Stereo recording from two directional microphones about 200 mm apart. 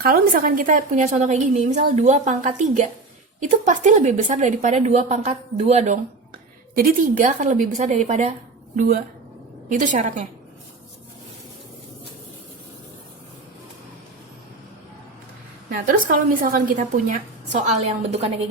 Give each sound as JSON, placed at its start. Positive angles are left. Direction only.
{"t": 0.0, "sound": "a woman's voice", "side_deg": -45}
{"t": 8.7, "sound": "a woman's voice", "side_deg": -45}
{"t": 16.0, "sound": "a woman's voice", "side_deg": -45}